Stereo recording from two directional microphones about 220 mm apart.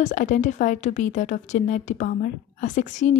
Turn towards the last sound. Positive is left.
turn(degrees=35)  # may be behind; listen again after turning